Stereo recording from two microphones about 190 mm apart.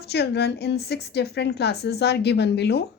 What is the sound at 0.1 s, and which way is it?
A woman's voice, 60° left (ahead or behind).